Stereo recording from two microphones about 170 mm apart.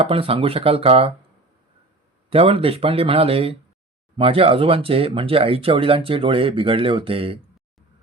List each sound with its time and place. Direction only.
0.0 s speech: 30° right (ahead or behind)
2.3 s speech: 35° right (ahead or behind)